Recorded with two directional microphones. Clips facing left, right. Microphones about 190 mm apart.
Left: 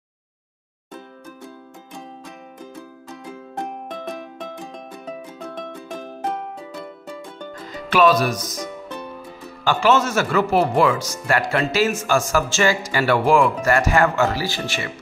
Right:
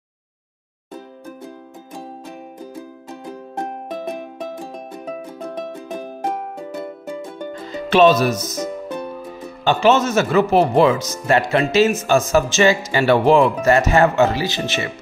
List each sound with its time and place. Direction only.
2.6 s music: 30° right (ahead or behind)
5.4 s music: 10° right (ahead or behind)
7.6 s speech: 25° right (ahead or behind)
9.7 s speech: 20° right (ahead or behind)